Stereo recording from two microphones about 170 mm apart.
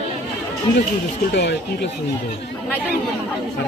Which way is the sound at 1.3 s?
90° left.